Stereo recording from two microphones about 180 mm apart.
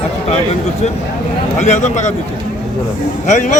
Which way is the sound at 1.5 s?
40° left (ahead or behind).